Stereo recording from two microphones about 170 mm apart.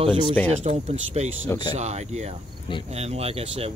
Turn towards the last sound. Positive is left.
turn(degrees=-35)  # may be behind; listen again after turning